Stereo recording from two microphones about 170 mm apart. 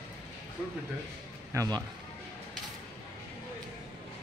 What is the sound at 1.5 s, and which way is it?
Speech, 20° right (ahead or behind).